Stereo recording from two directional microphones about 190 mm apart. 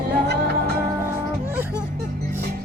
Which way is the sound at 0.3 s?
60° right (ahead or behind).